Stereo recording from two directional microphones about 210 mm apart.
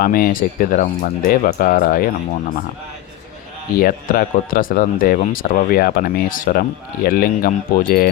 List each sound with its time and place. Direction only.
0.0 s speech: 40° left (ahead or behind)
3.8 s speech: 45° left (ahead or behind)